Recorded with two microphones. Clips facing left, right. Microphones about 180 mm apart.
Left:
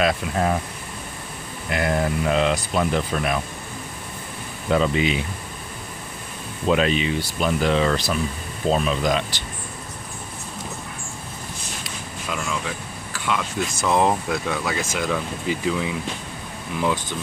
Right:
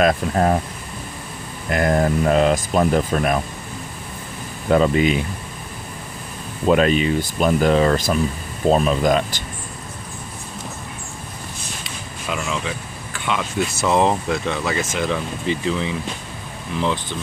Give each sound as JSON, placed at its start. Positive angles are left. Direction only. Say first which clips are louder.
{"t": 0.0, "sound": "speech", "louder": "right 4 dB", "side_deg": -45}
{"t": 1.7, "sound": "speech", "louder": "right 4 dB", "side_deg": -45}
{"t": 4.6, "sound": "speech", "louder": "right 4 dB", "side_deg": -45}
{"t": 6.7, "sound": "speech", "louder": "right 4 dB", "side_deg": -45}
{"t": 11.8, "sound": "a sound", "louder": "right 1 dB", "side_deg": 0}
{"t": 13.2, "sound": "speech", "louder": "right 2 dB", "side_deg": 0}